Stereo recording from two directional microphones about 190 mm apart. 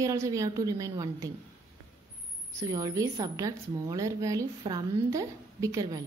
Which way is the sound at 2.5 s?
15° right (ahead or behind).